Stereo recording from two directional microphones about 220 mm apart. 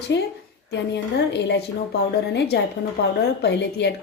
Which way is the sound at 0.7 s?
50° left (ahead or behind).